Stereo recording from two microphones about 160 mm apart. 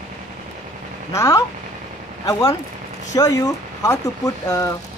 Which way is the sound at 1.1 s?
20° left (ahead or behind).